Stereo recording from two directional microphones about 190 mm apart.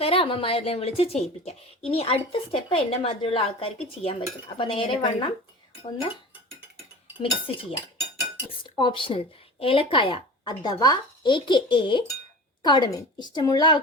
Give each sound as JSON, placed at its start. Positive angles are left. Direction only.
{"t": 0.0, "sound": "speech", "side_deg": 30}
{"t": 7.2, "sound": "speech", "side_deg": 30}